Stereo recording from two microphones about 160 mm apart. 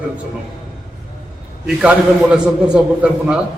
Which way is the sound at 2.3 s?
5° right (ahead or behind).